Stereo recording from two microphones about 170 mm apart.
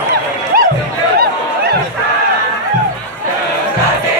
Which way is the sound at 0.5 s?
60° right (ahead or behind).